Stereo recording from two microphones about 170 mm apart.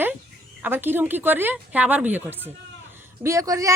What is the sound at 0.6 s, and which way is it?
Speech, 10° right (ahead or behind).